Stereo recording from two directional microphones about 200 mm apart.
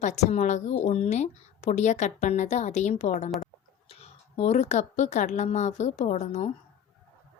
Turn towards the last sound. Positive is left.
turn(degrees=35)  # may be behind; listen again after turning